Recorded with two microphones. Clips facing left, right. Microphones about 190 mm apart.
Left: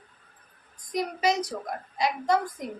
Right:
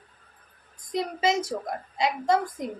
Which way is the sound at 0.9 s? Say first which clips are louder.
Right 1 dB; 25° right (ahead or behind).